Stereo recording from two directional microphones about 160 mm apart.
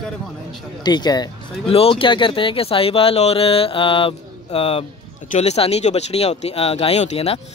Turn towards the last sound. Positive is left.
turn(degrees=40)  # may be behind; listen again after turning